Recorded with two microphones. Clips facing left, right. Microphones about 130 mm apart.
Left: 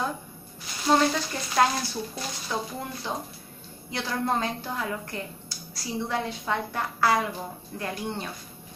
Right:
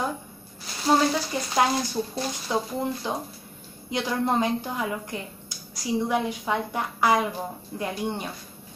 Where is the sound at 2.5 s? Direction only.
20° right (ahead or behind).